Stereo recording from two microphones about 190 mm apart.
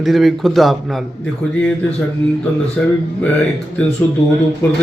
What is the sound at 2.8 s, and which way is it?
Speech, 5° left (ahead or behind).